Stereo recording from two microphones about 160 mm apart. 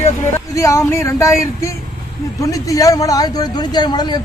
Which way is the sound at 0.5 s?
20° left (ahead or behind).